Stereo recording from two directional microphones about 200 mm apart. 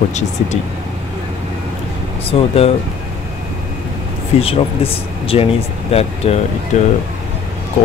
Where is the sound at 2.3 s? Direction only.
30° left (ahead or behind).